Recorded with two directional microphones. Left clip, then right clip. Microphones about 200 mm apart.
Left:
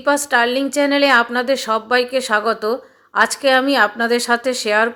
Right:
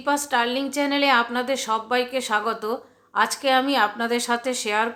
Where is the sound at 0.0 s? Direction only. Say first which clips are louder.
Left 7 dB; 25° left (ahead or behind).